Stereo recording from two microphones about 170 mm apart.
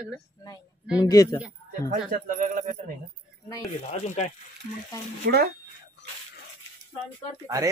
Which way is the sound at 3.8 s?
40° left (ahead or behind).